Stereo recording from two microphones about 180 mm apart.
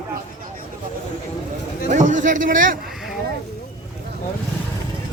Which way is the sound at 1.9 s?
45° right (ahead or behind).